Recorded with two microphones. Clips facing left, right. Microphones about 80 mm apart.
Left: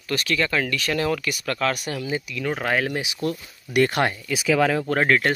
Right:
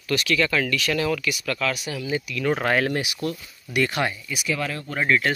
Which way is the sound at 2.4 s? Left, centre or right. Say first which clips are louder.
Right 2 dB; centre.